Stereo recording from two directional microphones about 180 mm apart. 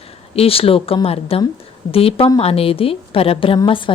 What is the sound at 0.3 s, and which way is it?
A woman's voice, 30° left (ahead or behind).